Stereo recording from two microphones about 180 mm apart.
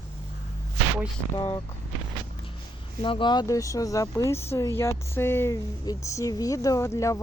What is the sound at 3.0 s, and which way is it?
Speech, 25° left (ahead or behind).